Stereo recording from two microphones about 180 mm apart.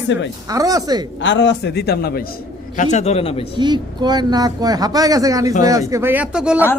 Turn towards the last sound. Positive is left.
turn(degrees=-5)  # may be behind; listen again after turning